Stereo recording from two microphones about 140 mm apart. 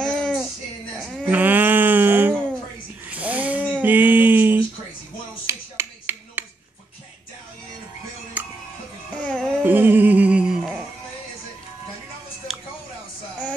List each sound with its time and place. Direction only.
0.0 s a sound: 5° left (ahead or behind)
1.3 s a sound: 10° right (ahead or behind)
5.5 s finger snapping: 20° right (ahead or behind)
8.4 s music: 10° right (ahead or behind)
9.2 s music: 5° left (ahead or behind)
9.6 s music: 15° right (ahead or behind)